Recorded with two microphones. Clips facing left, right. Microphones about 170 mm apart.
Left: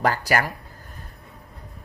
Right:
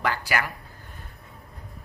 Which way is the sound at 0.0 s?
40° left (ahead or behind).